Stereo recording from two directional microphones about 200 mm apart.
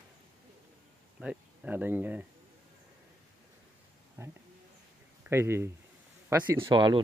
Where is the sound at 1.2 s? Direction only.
5° right (ahead or behind).